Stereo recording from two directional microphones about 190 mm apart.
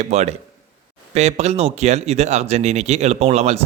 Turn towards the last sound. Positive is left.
turn(degrees=-35)  # may be behind; listen again after turning